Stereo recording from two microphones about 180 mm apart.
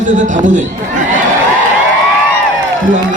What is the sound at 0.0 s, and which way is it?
Speech, 45° right (ahead or behind).